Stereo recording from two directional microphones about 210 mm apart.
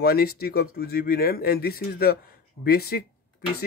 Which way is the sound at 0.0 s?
50° left (ahead or behind).